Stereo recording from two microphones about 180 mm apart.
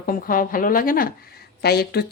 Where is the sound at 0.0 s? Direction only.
50° left (ahead or behind).